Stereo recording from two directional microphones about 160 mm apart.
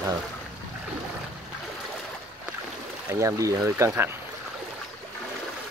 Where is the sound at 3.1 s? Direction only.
20° right (ahead or behind).